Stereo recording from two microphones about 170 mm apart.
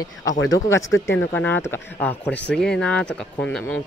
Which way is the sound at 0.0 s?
20° left (ahead or behind).